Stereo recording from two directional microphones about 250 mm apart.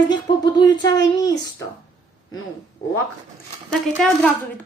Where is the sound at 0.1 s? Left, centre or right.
Centre.